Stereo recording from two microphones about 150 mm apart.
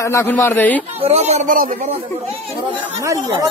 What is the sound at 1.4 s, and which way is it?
Speech, 65° right (ahead or behind).